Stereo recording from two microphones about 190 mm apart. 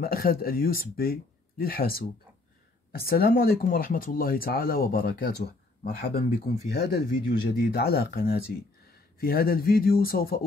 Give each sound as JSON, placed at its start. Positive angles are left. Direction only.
{"t": 0.0, "sound": "speech", "side_deg": 50}